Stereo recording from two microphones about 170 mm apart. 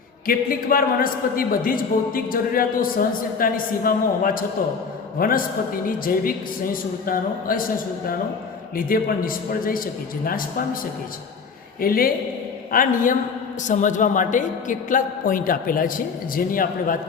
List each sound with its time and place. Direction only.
0.3 s a man's voice: 55° left (ahead or behind)
8.7 s a man's voice: 55° left (ahead or behind)
11.8 s a man's voice: 60° left (ahead or behind)